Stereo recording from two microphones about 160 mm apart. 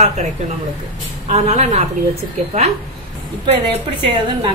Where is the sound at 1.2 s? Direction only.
40° right (ahead or behind).